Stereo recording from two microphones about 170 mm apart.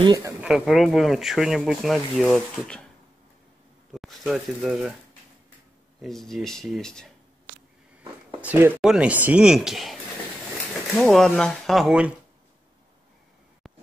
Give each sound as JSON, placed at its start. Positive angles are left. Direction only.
{"t": 0.0, "sound": "speech", "side_deg": -20}
{"t": 0.4, "sound": "speech", "side_deg": -5}
{"t": 3.9, "sound": "speech", "side_deg": 0}
{"t": 6.0, "sound": "speech", "side_deg": 0}
{"t": 8.4, "sound": "speech", "side_deg": -10}
{"t": 11.0, "sound": "speech", "side_deg": 5}